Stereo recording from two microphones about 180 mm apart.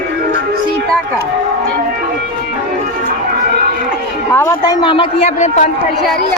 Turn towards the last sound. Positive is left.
turn(degrees=35)  # may be behind; listen again after turning